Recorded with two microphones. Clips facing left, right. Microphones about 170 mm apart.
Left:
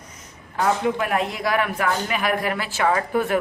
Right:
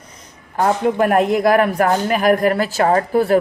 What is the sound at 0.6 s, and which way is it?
A man's voice, 45° right (ahead or behind).